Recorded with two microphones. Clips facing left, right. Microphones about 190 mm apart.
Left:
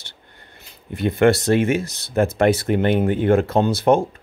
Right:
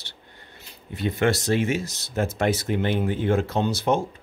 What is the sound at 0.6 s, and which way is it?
Speech, 55° left (ahead or behind).